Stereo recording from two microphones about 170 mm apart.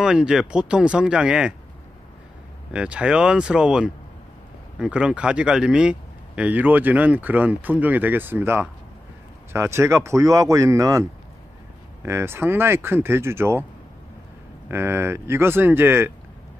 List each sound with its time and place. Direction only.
0.0 s speech: 5° right (ahead or behind)
2.7 s speech: 5° right (ahead or behind)
14.7 s speech: 15° right (ahead or behind)